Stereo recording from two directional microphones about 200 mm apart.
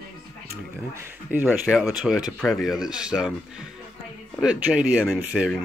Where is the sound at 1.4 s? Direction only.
Centre (ahead or behind).